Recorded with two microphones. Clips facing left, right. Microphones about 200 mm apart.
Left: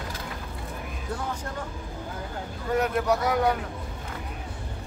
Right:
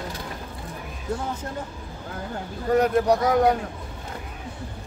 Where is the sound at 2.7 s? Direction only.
35° right (ahead or behind).